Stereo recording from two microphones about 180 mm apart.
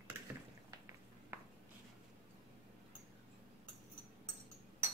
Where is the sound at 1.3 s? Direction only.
15° right (ahead or behind).